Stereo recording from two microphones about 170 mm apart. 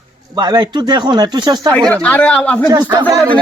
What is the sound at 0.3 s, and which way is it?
Speech, 25° right (ahead or behind).